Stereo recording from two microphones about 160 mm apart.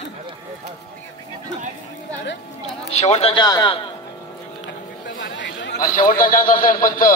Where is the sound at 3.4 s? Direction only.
25° left (ahead or behind).